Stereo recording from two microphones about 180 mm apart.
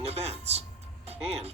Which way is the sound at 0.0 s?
35° right (ahead or behind).